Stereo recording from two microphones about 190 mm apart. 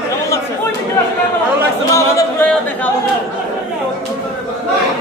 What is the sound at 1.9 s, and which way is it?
A capella, 10° left (ahead or behind).